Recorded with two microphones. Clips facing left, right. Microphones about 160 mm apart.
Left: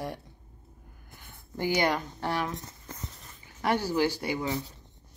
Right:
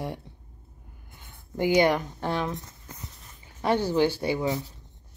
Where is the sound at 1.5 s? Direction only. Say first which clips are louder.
Right 5 dB; 20° right (ahead or behind).